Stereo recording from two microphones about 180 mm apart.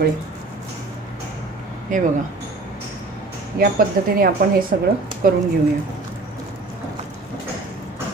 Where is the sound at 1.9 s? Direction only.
45° right (ahead or behind).